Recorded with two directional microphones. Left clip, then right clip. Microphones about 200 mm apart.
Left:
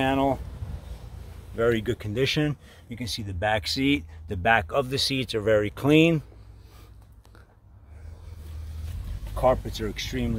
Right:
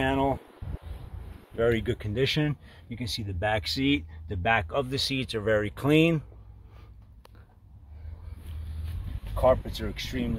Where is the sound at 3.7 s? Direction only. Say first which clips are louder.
Left 2 dB; 20° left (ahead or behind).